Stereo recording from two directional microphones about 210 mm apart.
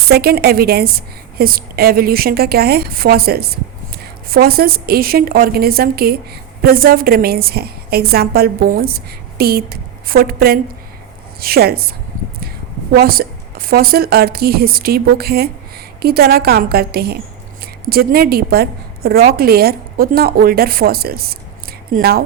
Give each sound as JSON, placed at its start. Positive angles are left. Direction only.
{"t": 0.1, "sound": "a woman's voice", "side_deg": -50}